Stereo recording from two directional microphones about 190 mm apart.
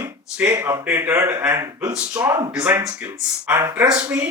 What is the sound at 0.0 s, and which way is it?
A man's voice, 10° right (ahead or behind).